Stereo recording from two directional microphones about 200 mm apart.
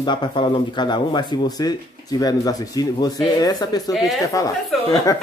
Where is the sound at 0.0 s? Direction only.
20° left (ahead or behind).